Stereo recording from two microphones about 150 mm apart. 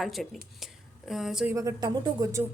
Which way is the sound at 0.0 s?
Centre (ahead or behind).